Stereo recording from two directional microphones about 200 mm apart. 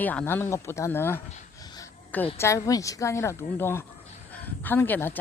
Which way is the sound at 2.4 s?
15° left (ahead or behind).